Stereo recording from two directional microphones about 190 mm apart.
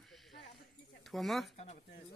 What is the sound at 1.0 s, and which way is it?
Speech, centre (ahead or behind).